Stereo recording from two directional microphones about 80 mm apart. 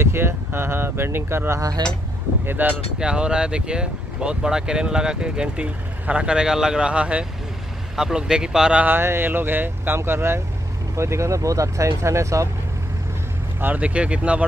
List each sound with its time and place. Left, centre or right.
0.0 s speech: right
1.8 s speech: right
2.4 s speech: right
3.0 s speech: centre
8.8 s speech: right
13.6 s speech: centre